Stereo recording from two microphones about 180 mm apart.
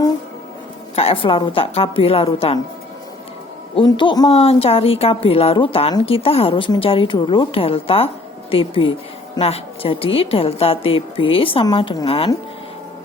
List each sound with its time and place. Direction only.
0.9 s speech: 30° left (ahead or behind)
3.8 s a man's voice: 25° left (ahead or behind)